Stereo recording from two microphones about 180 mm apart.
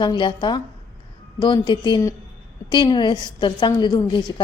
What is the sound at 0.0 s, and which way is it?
A woman's voice, 25° left (ahead or behind).